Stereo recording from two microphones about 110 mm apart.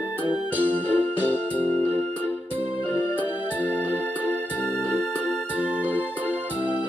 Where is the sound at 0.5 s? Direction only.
15° left (ahead or behind).